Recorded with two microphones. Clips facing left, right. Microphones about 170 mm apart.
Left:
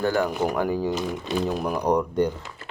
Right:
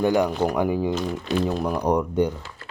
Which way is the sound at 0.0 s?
15° right (ahead or behind).